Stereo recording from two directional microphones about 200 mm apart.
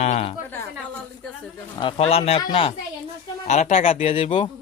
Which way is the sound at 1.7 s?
25° left (ahead or behind).